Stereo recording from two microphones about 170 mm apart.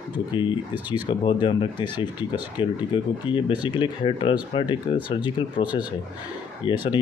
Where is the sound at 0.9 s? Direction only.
30° left (ahead or behind).